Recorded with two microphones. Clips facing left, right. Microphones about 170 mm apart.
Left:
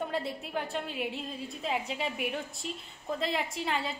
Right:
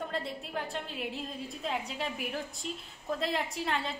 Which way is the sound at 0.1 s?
Centre (ahead or behind).